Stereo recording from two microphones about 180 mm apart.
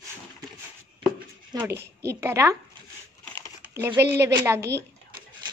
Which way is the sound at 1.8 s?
65° right (ahead or behind).